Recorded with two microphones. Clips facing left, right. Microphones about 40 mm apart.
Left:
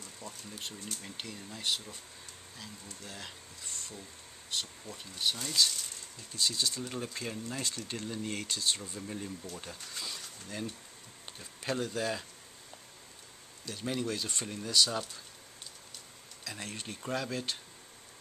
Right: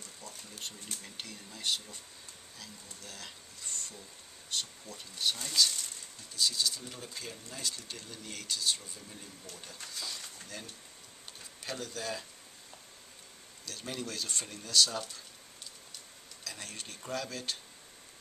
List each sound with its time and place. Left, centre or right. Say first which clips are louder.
0.2 s a sound: left 2 dB; left
1.0 s speech: left 3 dB; centre
3.0 s speech: left 2 dB; centre
6.4 s speech: even; left
12.0 s speech: left 4 dB; centre
13.7 s speech: left 5 dB; centre
16.4 s speech: left 3 dB; centre